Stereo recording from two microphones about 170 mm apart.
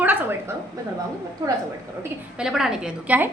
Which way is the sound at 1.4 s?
20° right (ahead or behind).